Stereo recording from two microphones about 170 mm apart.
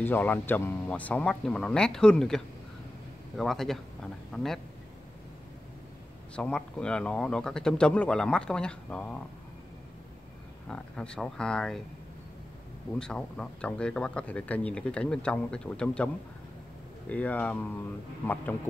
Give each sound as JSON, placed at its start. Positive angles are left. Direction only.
{"t": 0.0, "sound": "speech", "side_deg": 10}
{"t": 6.3, "sound": "speech", "side_deg": 5}
{"t": 10.7, "sound": "speech", "side_deg": 5}
{"t": 13.0, "sound": "speech", "side_deg": 5}
{"t": 17.1, "sound": "speech", "side_deg": 10}